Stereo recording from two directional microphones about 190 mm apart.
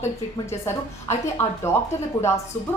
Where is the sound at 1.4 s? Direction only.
10° left (ahead or behind).